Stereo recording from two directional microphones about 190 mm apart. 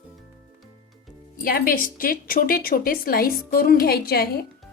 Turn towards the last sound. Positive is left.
turn(degrees=55)  # may be behind; listen again after turning